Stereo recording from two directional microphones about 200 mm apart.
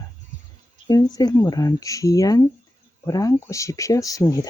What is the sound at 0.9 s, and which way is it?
Speech, 20° left (ahead or behind).